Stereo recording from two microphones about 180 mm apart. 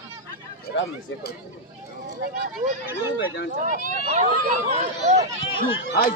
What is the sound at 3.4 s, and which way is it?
Speech, 60° left (ahead or behind).